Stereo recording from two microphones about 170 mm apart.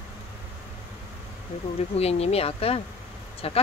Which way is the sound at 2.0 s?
35° left (ahead or behind).